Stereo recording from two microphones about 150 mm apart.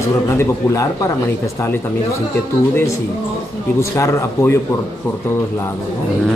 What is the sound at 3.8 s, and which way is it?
Speech, 20° left (ahead or behind).